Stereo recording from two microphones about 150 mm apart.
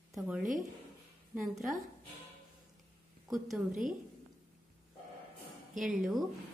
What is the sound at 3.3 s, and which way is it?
Speech, centre (ahead or behind).